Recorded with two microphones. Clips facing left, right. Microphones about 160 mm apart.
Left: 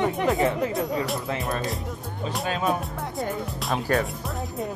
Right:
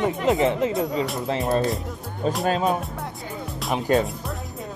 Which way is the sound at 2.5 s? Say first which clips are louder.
Right 3 dB; 30° right (ahead or behind).